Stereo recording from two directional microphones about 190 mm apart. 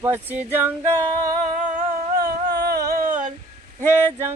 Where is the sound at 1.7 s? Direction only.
50° right (ahead or behind).